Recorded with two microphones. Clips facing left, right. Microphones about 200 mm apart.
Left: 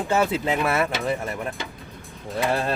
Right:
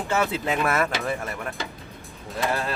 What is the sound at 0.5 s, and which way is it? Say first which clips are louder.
Speech: left 1 dB; 10° left (ahead or behind).